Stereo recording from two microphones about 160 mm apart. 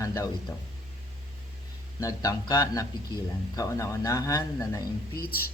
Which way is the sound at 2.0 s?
20° left (ahead or behind).